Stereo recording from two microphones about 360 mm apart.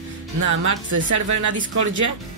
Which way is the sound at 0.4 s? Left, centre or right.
Right.